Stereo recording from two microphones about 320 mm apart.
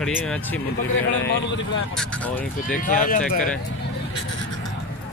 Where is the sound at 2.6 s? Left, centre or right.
Left.